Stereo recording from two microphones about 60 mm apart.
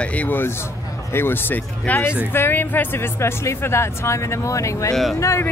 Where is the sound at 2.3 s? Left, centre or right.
Left.